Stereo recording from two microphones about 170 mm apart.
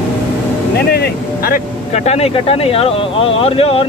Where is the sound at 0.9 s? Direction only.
65° left (ahead or behind).